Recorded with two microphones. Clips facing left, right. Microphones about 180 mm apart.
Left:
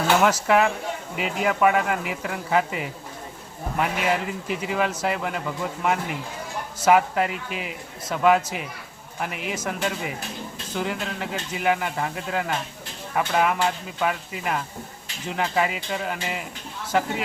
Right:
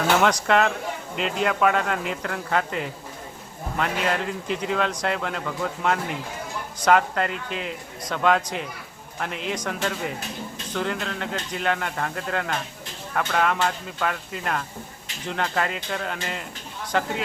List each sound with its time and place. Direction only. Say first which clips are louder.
0.2 s a man's voice: left 1 dB; 5° left (ahead or behind)